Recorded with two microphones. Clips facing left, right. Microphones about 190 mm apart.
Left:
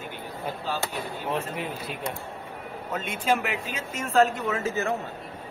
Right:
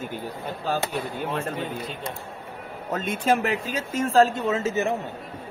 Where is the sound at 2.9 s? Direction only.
40° right (ahead or behind).